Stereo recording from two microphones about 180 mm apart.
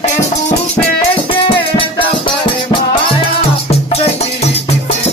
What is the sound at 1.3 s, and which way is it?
Music, 30° left (ahead or behind).